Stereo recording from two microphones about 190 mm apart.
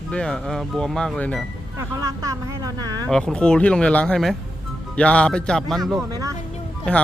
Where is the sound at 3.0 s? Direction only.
Centre (ahead or behind).